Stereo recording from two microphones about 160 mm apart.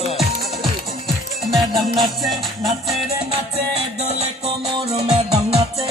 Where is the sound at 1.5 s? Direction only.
Centre (ahead or behind).